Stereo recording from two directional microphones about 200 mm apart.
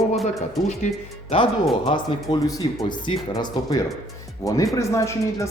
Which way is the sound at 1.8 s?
25° left (ahead or behind).